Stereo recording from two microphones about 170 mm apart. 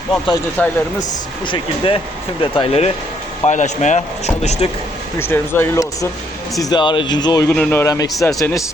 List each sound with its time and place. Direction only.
0.6 s speech: 10° left (ahead or behind)
1.5 s speech: 30° left (ahead or behind)
3.4 s speech: 45° left (ahead or behind)
5.2 s speech: 15° left (ahead or behind)
6.6 s speech: 25° left (ahead or behind)
7.5 s speech: 5° left (ahead or behind)
7.8 s speech: 20° left (ahead or behind)